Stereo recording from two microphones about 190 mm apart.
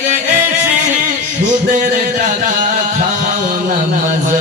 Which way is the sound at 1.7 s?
40° right (ahead or behind).